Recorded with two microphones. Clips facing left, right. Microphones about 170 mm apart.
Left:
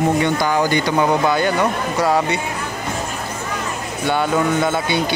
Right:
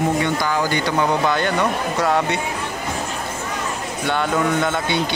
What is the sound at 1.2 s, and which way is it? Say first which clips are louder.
Speech: left 2 dB; 5° left (ahead or behind).